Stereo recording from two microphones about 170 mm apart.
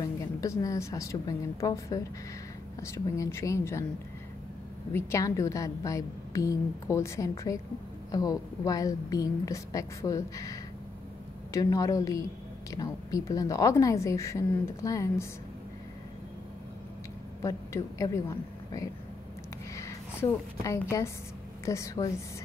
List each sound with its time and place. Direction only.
0.0 s a woman's voice: 20° left (ahead or behind)
4.9 s a woman's voice: 15° left (ahead or behind)
17.4 s a woman's voice: 20° left (ahead or behind)
19.7 s a woman's voice: 15° left (ahead or behind)